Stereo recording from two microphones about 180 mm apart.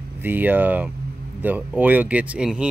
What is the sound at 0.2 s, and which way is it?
Speech, 10° right (ahead or behind).